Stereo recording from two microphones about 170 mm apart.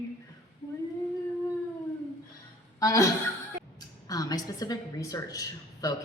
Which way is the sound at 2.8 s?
20° left (ahead or behind).